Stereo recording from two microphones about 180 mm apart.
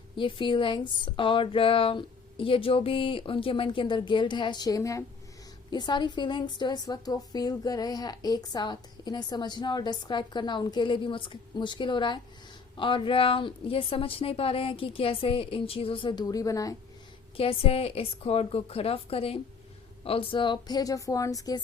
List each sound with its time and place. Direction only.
0.2 s a woman's voice: 30° left (ahead or behind)
17.3 s a woman's voice: 30° left (ahead or behind)